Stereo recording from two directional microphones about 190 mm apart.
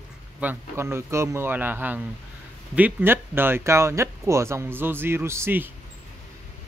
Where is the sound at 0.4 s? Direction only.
10° right (ahead or behind).